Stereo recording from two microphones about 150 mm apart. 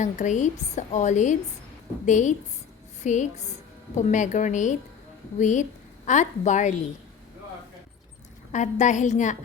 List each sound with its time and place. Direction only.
0.0 s a woman's voice: 55° left (ahead or behind)
8.5 s a woman's voice: 55° left (ahead or behind)